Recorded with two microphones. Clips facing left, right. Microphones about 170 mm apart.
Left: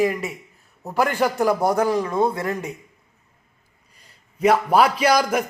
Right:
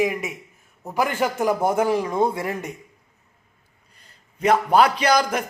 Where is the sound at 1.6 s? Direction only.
35° left (ahead or behind).